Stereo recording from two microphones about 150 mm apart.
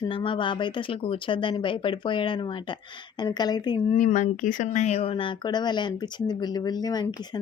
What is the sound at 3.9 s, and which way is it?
Speech, 55° left (ahead or behind).